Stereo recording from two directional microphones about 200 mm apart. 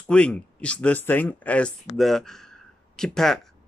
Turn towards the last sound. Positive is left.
turn(degrees=5)  # may be behind; listen again after turning